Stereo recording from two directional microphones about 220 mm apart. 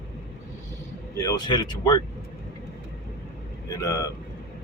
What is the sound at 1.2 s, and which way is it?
Speech, 15° left (ahead or behind).